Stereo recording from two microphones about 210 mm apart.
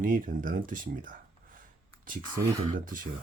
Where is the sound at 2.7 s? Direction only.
40° right (ahead or behind).